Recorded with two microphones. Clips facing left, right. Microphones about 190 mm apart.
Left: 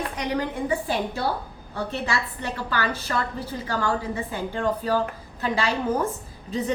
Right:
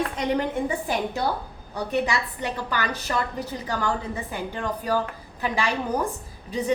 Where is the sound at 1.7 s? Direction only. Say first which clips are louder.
Right 3 dB; 15° right (ahead or behind).